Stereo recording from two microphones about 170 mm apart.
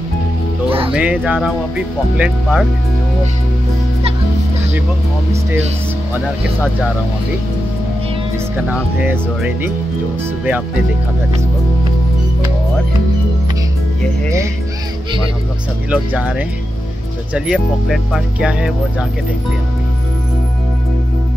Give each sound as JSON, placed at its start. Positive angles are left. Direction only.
{"t": 0.7, "sound": "music", "side_deg": -35}
{"t": 0.9, "sound": "speech", "side_deg": -5}
{"t": 8.6, "sound": "speech", "side_deg": -10}
{"t": 15.9, "sound": "speech", "side_deg": -5}